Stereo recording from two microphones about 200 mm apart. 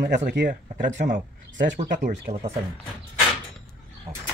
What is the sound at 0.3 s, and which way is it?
Speech, 50° right (ahead or behind).